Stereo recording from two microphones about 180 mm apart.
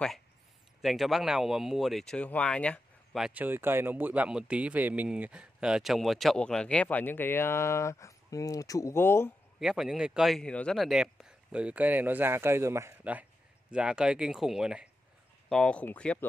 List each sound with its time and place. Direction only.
0.8 s speech: centre (ahead or behind)
9.6 s speech: centre (ahead or behind)